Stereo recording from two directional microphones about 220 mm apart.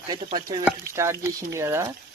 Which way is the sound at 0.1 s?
20° right (ahead or behind).